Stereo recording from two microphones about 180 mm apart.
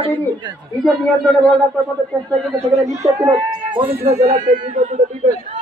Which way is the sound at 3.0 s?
25° right (ahead or behind).